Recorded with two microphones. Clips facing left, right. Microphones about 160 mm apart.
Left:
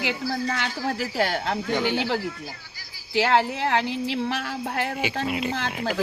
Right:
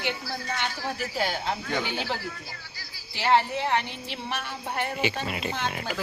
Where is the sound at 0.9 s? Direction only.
75° left (ahead or behind).